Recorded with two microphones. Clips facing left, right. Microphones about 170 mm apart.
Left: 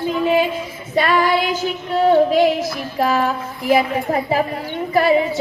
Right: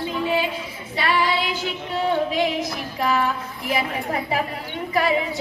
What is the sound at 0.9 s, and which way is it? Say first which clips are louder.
Child singing: left 6 dB; 50° left (ahead or behind).